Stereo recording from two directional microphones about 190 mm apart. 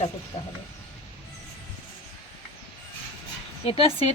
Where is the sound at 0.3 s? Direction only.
30° left (ahead or behind).